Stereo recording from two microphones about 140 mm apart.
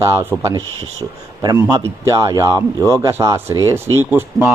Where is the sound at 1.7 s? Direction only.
25° right (ahead or behind).